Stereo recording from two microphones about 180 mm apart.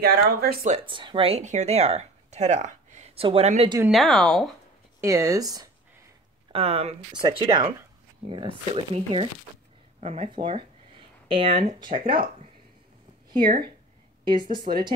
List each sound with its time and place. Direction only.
0.0 s speech: 60° right (ahead or behind)
0.7 s speech: 25° right (ahead or behind)
3.9 s speech: centre (ahead or behind)
5.0 s speech: 15° right (ahead or behind)
6.5 s speech: 35° right (ahead or behind)
13.4 s speech: 55° right (ahead or behind)
14.2 s speech: 25° right (ahead or behind)